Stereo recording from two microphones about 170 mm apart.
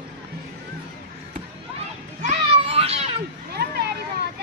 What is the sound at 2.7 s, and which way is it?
Baby cry, 35° right (ahead or behind).